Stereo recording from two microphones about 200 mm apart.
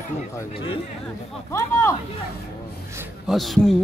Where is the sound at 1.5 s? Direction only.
15° left (ahead or behind).